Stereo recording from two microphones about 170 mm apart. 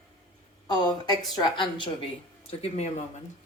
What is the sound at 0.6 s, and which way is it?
Speech, 25° left (ahead or behind).